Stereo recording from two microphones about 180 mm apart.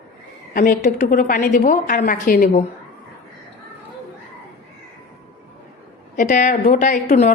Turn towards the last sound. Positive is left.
turn(degrees=50)  # may be behind; listen again after turning